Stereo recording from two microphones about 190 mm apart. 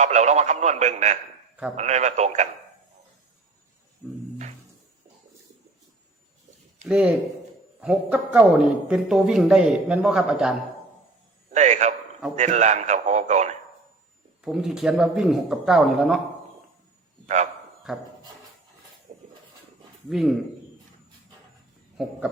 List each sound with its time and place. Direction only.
0.0 s speech: 40° right (ahead or behind)
6.8 s a man's voice: 5° right (ahead or behind)
11.5 s speech: 40° right (ahead or behind)
14.4 s a man's voice: centre (ahead or behind)
17.2 s a man's voice: 40° right (ahead or behind)
17.9 s a man's voice: centre (ahead or behind)
19.1 s a sound: 40° right (ahead or behind)
20.1 s a man's voice: centre (ahead or behind)